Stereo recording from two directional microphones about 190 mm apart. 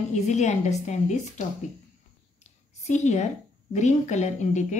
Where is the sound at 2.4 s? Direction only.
40° left (ahead or behind).